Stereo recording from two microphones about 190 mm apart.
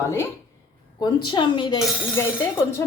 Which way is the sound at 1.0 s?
25° left (ahead or behind).